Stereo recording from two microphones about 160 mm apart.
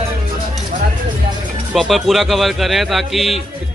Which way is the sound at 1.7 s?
Centre (ahead or behind).